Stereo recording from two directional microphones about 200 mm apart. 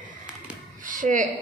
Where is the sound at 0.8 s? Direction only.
40° right (ahead or behind).